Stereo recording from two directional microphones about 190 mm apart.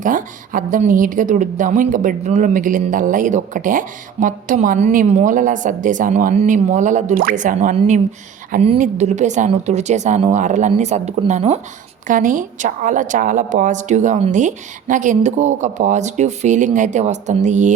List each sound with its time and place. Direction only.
0.0 s a woman's voice: 45° right (ahead or behind)